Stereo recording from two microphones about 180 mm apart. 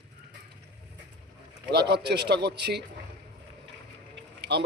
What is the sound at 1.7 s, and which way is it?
Speech, 65° right (ahead or behind).